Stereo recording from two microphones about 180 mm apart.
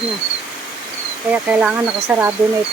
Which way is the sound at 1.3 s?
5° right (ahead or behind).